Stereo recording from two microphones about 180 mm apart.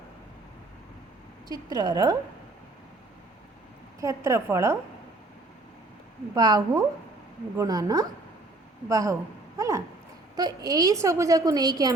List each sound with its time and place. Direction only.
1.5 s a woman's voice: 20° right (ahead or behind)
4.0 s a woman's voice: 15° right (ahead or behind)
6.3 s a woman's voice: 20° right (ahead or behind)